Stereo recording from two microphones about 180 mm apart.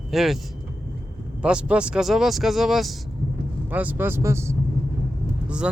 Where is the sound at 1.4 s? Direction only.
5° right (ahead or behind).